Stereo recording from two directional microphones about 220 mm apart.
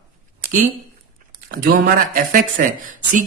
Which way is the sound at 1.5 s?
40° right (ahead or behind).